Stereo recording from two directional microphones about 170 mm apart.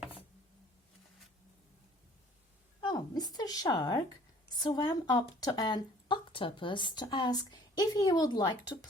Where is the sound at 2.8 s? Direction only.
25° left (ahead or behind).